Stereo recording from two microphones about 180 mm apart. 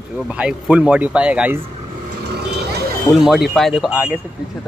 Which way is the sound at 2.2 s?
65° right (ahead or behind).